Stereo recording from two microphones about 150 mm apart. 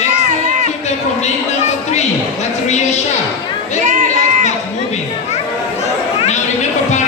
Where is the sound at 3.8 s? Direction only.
60° right (ahead or behind).